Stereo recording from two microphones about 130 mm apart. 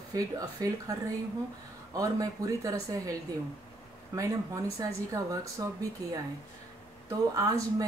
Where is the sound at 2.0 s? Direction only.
25° right (ahead or behind).